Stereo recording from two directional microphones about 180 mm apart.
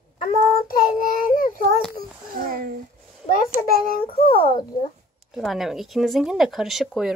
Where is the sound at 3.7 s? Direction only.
50° left (ahead or behind).